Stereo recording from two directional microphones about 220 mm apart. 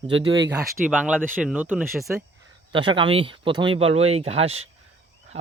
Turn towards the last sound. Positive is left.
turn(degrees=-30)  # may be behind; listen again after turning